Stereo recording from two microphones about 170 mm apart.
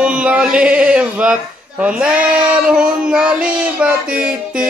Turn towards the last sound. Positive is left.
turn(degrees=-5)  # may be behind; listen again after turning